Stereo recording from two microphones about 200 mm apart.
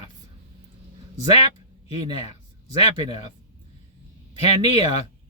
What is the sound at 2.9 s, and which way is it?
Speech, 25° right (ahead or behind).